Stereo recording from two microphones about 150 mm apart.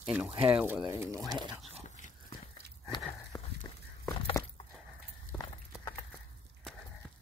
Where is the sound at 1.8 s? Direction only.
55° left (ahead or behind).